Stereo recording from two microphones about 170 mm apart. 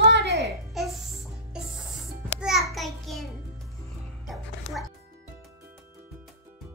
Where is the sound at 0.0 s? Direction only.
75° right (ahead or behind).